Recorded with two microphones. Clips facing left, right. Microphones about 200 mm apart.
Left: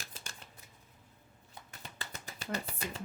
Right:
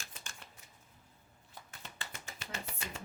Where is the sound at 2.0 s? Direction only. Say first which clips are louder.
Left 2 dB; 35° left (ahead or behind).